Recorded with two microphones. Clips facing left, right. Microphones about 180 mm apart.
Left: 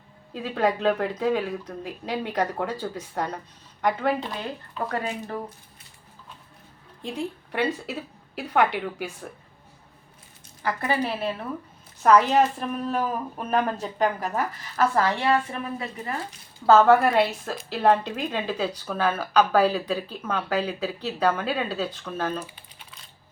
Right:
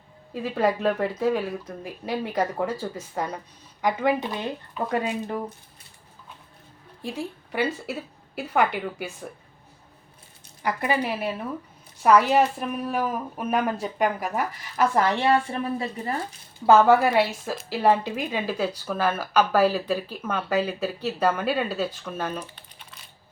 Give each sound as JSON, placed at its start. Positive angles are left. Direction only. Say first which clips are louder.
{"t": 0.3, "sound": "a woman's voice", "louder": "right 1 dB", "side_deg": -5}
{"t": 7.0, "sound": "speech", "louder": "left 1 dB", "side_deg": -5}
{"t": 10.6, "sound": "a woman's voice", "louder": "right 1 dB", "side_deg": -15}
{"t": 15.2, "sound": "speech", "louder": "right 2 dB", "side_deg": -30}
{"t": 16.6, "sound": "a woman's voice", "louder": "even", "side_deg": -10}
{"t": 22.4, "sound": "crumpling", "louder": "left 1 dB", "side_deg": 10}